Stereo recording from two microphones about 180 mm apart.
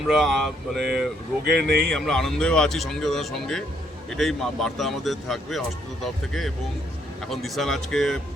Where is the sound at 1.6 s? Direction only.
60° right (ahead or behind).